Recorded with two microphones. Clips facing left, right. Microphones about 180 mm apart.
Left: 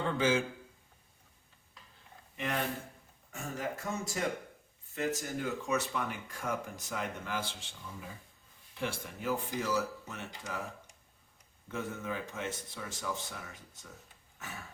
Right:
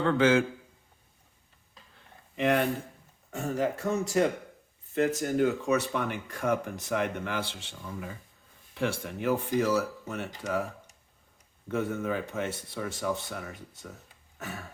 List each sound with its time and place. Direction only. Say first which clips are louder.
0.0 s a man's voice: right 7 dB; 70° right (ahead or behind)
2.3 s speech: right 9 dB; 70° right (ahead or behind)
11.7 s speech: right 8 dB; 60° right (ahead or behind)
14.3 s a sound: right 7 dB; 60° right (ahead or behind)